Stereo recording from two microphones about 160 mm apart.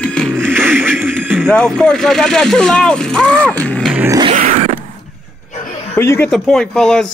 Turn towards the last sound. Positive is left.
turn(degrees=5)  # may be behind; listen again after turning